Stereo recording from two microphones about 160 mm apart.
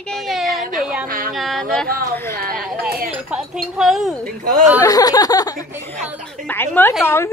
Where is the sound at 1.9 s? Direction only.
70° right (ahead or behind).